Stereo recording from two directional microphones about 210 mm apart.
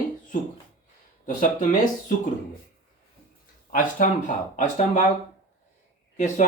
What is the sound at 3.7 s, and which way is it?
Speech, 40° left (ahead or behind).